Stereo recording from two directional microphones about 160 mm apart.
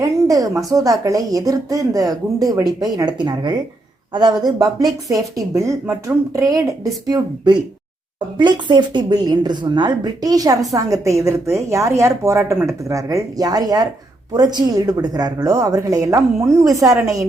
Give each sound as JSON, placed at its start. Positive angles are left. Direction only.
{"t": 0.0, "sound": "a woman's voice", "side_deg": -20}